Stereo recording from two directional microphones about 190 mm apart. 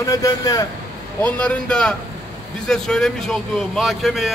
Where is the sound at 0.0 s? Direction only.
20° left (ahead or behind).